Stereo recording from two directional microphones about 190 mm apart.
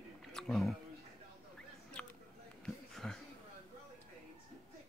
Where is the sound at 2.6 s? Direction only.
Centre (ahead or behind).